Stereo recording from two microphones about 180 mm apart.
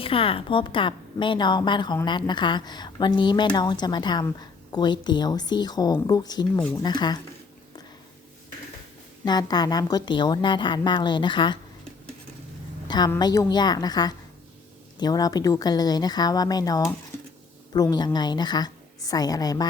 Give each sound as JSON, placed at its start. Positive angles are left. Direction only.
{"t": 0.0, "sound": "a woman's voice", "side_deg": 30}
{"t": 9.2, "sound": "a woman's voice", "side_deg": 20}
{"t": 13.1, "sound": "a woman's voice", "side_deg": 20}